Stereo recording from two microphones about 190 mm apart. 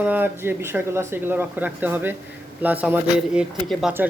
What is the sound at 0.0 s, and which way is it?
Speech, 10° right (ahead or behind).